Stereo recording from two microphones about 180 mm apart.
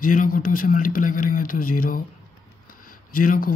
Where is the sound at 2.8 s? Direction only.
50° left (ahead or behind).